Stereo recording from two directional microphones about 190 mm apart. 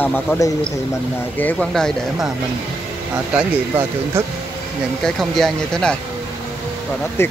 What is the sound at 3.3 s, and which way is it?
Speech, 10° right (ahead or behind).